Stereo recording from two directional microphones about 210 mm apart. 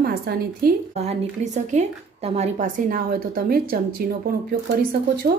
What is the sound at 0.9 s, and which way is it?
A woman's voice, 35° right (ahead or behind).